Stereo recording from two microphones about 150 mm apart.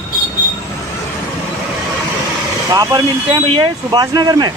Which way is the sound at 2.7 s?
25° right (ahead or behind).